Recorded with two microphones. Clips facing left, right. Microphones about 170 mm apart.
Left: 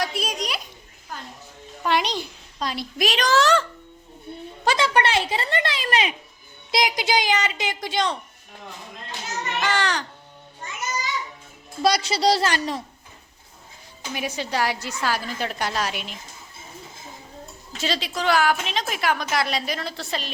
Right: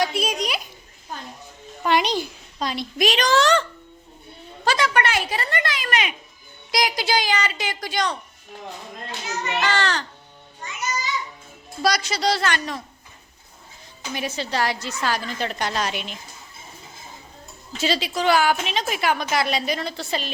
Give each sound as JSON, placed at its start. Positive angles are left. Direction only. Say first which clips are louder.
{"t": 0.0, "sound": "a sound", "louder": "right 4 dB", "side_deg": 0}
{"t": 1.8, "sound": "a child's voice", "louder": "right 2 dB", "side_deg": 0}
{"t": 4.6, "sound": "a child's voice", "louder": "even", "side_deg": 25}
{"t": 9.6, "sound": "a woman's voice", "louder": "even", "side_deg": 15}
{"t": 11.8, "sound": "a woman's voice", "louder": "left 2 dB", "side_deg": 30}
{"t": 14.1, "sound": "a woman's voice", "louder": "even", "side_deg": 10}
{"t": 17.7, "sound": "a woman's voice", "louder": "right 3 dB", "side_deg": 0}